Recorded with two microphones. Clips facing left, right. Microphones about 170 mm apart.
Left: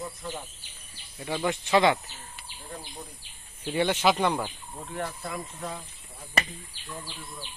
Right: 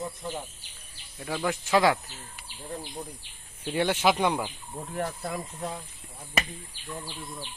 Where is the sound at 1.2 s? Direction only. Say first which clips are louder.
Left 1 dB; centre (ahead or behind).